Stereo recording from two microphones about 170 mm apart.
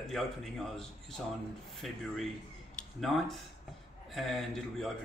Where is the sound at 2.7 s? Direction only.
Centre (ahead or behind).